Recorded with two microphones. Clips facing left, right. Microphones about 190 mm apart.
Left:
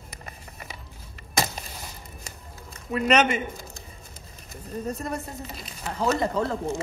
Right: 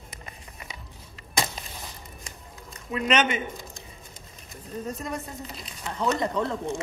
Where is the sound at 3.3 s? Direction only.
Centre (ahead or behind).